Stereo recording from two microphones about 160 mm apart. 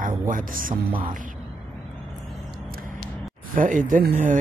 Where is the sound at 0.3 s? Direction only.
60° right (ahead or behind).